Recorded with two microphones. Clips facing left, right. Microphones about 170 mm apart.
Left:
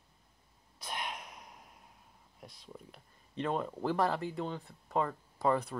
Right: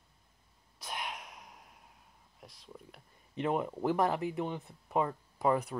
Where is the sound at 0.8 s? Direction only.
Centre (ahead or behind).